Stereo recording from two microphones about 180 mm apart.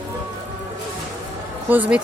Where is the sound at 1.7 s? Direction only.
5° right (ahead or behind).